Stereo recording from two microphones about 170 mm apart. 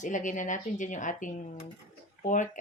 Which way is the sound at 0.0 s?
50° left (ahead or behind).